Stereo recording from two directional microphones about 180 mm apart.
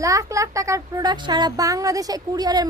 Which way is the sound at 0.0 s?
20° right (ahead or behind).